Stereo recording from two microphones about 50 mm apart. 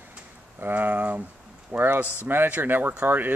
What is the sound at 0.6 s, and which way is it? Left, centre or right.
Speech, right.